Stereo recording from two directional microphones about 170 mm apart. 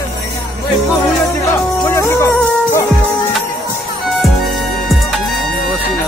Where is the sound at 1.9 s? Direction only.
15° left (ahead or behind).